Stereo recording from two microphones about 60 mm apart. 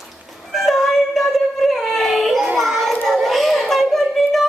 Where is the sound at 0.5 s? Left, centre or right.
Centre.